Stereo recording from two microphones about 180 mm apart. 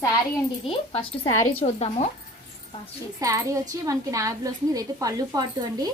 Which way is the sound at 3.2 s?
20° right (ahead or behind).